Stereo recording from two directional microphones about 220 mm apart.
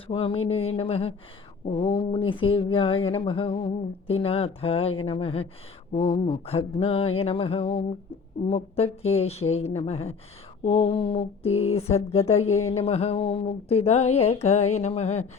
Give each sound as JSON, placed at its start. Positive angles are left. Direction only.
{"t": 0.1, "sound": "speech", "side_deg": 25}